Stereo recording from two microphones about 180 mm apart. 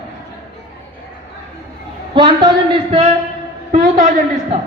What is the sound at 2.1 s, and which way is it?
Speech, 25° right (ahead or behind).